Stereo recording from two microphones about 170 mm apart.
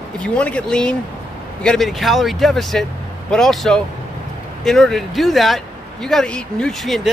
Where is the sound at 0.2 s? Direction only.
5° left (ahead or behind).